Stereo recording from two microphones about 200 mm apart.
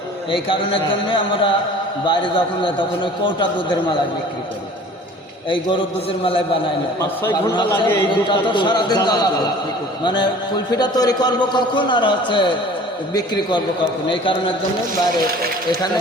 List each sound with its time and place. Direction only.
0.3 s a man's voice: 25° left (ahead or behind)
6.2 s a man's voice: 25° left (ahead or behind)
7.2 s a man's voice: 15° left (ahead or behind)